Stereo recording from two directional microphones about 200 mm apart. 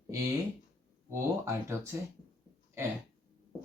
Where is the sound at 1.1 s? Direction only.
15° right (ahead or behind).